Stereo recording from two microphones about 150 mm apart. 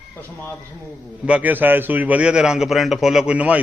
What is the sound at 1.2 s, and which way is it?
A man's voice, 10° right (ahead or behind).